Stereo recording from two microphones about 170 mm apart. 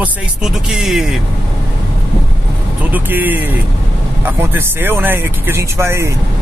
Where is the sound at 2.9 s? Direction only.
10° right (ahead or behind).